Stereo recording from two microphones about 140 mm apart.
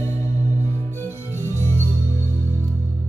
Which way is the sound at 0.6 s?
15° right (ahead or behind).